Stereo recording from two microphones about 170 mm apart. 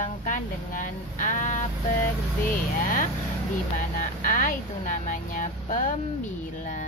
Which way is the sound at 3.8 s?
55° left (ahead or behind).